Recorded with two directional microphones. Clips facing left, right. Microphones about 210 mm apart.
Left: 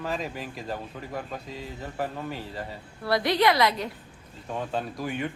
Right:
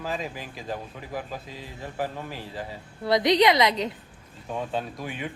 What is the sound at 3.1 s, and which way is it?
Speech, 20° right (ahead or behind).